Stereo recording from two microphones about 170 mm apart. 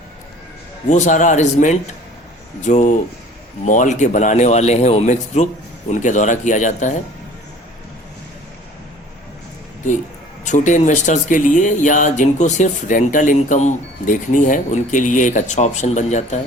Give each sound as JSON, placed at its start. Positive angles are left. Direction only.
{"t": 0.9, "sound": "speech", "side_deg": 45}
{"t": 10.4, "sound": "speech", "side_deg": 45}